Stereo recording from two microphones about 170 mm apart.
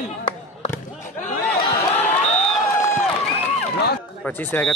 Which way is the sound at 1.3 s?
35° left (ahead or behind).